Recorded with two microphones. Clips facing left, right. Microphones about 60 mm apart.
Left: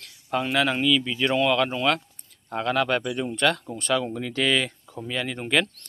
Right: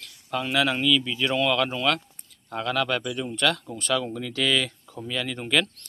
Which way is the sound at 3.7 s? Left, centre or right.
Centre.